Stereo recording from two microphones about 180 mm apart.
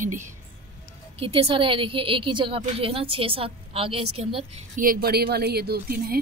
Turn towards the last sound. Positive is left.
turn(degrees=-60)  # may be behind; listen again after turning